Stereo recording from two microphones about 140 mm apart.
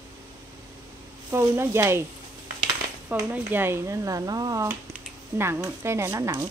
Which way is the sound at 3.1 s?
15° right (ahead or behind).